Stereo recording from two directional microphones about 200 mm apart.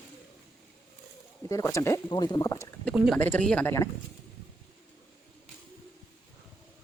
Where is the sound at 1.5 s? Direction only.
15° left (ahead or behind).